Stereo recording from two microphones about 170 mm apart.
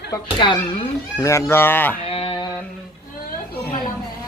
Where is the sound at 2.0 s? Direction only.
35° left (ahead or behind).